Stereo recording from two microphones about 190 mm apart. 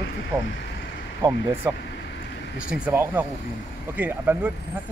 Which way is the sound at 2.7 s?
10° right (ahead or behind).